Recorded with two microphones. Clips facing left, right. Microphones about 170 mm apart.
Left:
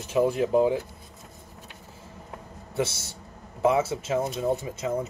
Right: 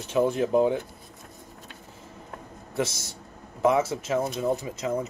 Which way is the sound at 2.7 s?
30° left (ahead or behind).